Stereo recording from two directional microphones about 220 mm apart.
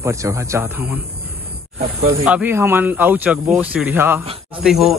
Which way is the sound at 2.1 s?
5° right (ahead or behind).